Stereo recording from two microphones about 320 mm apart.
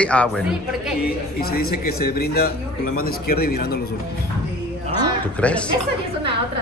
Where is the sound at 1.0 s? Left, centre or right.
Left.